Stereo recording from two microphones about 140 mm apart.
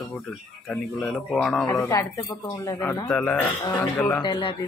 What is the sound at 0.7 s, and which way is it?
Speech, 5° left (ahead or behind).